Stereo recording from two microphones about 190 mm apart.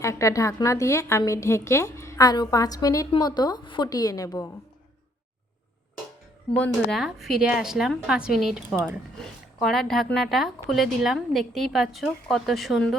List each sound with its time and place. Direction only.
0.0 s a woman's voice: 15° left (ahead or behind)
6.6 s a woman's voice: centre (ahead or behind)